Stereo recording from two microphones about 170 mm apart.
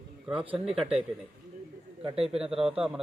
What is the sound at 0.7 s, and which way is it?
Speech, centre (ahead or behind).